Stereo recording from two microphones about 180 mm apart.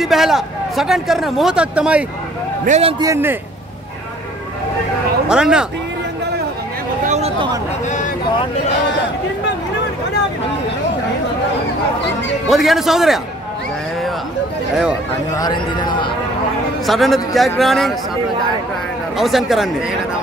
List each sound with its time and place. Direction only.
0.0 s a man's voice: centre (ahead or behind)
2.6 s a man's voice: 35° right (ahead or behind)
3.0 s a man's voice: 15° right (ahead or behind)
5.3 s a man's voice: 5° right (ahead or behind)
7.1 s a sound: 35° right (ahead or behind)
12.4 s a man's voice: centre (ahead or behind)
15.3 s a man's voice: 20° left (ahead or behind)
16.8 s a man's voice: centre (ahead or behind)
19.1 s a man's voice: centre (ahead or behind)